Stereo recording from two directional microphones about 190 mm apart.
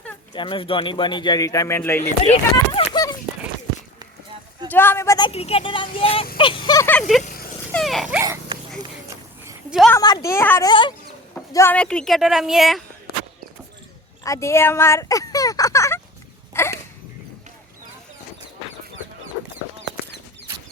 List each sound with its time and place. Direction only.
0.3 s speech: 25° left (ahead or behind)
2.2 s speech: 35° left (ahead or behind)
2.9 s a sound: 20° left (ahead or behind)
4.7 s speech: 10° left (ahead or behind)
7.7 s a woman's voice: centre (ahead or behind)
9.4 s a sound: 10° right (ahead or behind)
9.9 s a woman's voice: 20° left (ahead or behind)
10.7 s speech: 25° left (ahead or behind)
11.5 s a woman's voice: 10° left (ahead or behind)
14.3 s speech: 15° left (ahead or behind)
16.5 s a sound: 15° left (ahead or behind)